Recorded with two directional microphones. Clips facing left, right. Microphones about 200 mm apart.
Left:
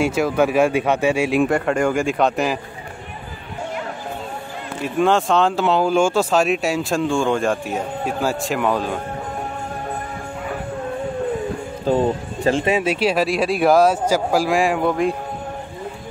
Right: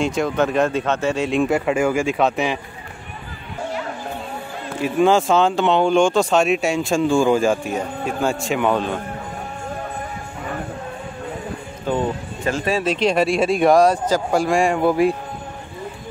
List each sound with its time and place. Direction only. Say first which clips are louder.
0.0 s speech: left 2 dB; 5° left (ahead or behind)
4.8 s speech: right 2 dB; centre (ahead or behind)
11.9 s speech: left 4 dB; 35° left (ahead or behind)
12.4 s speech: left 3 dB; 25° left (ahead or behind)
12.8 s speech: right 1 dB; 10° left (ahead or behind)